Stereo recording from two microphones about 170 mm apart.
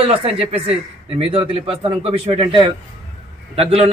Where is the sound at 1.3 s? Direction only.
35° right (ahead or behind).